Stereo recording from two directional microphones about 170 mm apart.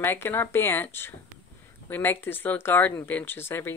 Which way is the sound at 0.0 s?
15° left (ahead or behind).